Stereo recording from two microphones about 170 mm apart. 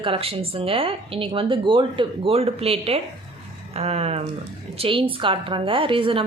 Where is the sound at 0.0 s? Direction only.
35° right (ahead or behind).